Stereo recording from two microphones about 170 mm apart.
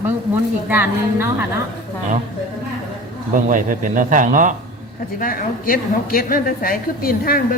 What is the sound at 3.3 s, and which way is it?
Speech, 50° right (ahead or behind).